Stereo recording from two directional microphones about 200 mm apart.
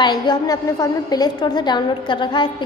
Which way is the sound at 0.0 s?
20° left (ahead or behind).